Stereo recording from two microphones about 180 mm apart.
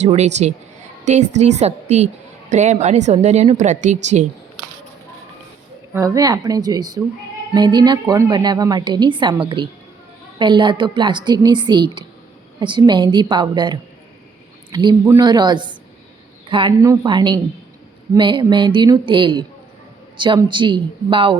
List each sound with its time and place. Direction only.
0.0 s a woman's voice: 40° right (ahead or behind)
5.9 s a woman's voice: 15° right (ahead or behind)